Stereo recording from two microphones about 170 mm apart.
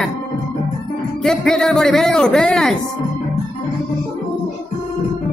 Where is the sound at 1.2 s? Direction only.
Centre (ahead or behind).